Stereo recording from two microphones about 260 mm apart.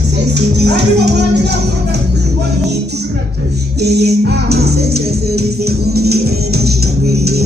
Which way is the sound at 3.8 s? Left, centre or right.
Right.